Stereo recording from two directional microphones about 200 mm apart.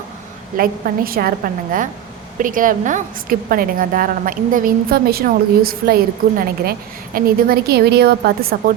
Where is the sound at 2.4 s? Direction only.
40° right (ahead or behind).